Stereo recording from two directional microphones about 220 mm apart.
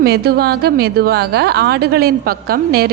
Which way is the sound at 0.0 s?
45° right (ahead or behind).